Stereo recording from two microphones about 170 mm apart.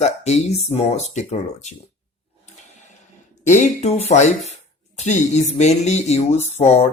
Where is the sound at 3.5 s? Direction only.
40° left (ahead or behind).